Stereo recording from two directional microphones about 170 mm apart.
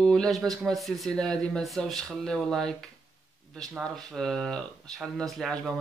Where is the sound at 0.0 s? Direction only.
Centre (ahead or behind).